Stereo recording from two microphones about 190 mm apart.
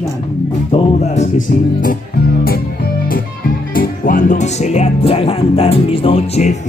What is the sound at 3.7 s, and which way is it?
Music, 50° left (ahead or behind).